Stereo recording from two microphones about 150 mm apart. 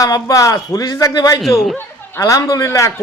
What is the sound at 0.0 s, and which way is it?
A man's voice, 25° left (ahead or behind).